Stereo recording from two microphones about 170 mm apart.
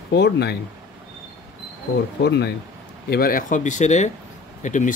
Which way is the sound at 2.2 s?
75° left (ahead or behind).